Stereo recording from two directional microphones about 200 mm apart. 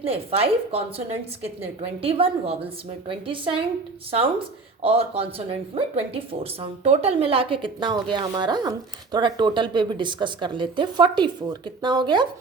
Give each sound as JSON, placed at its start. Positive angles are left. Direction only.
{"t": 0.0, "sound": "speech", "side_deg": -30}